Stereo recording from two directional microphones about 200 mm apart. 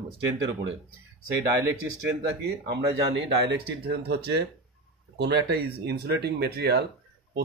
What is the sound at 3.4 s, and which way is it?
Speech, 55° right (ahead or behind).